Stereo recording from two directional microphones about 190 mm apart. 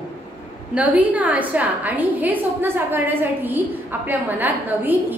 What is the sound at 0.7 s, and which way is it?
A woman's voice, 10° right (ahead or behind).